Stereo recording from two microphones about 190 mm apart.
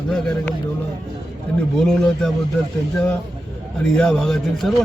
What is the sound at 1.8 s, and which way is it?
Speech, 5° left (ahead or behind).